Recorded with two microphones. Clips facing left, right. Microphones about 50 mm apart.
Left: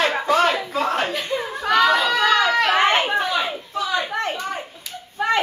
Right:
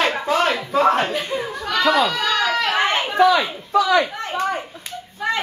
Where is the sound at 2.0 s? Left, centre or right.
Left.